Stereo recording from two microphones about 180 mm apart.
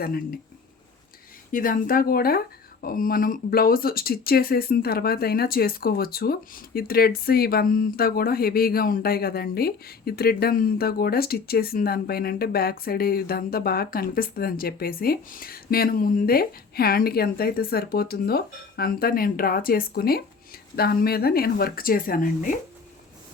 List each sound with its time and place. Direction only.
0.0 s speech: 55° left (ahead or behind)
1.5 s speech: 50° left (ahead or behind)